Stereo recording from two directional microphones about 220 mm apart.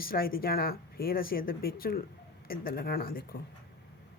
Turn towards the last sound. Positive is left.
turn(degrees=40)  # may be behind; listen again after turning